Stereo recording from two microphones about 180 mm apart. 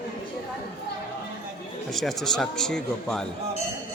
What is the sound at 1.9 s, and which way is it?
Speech, centre (ahead or behind).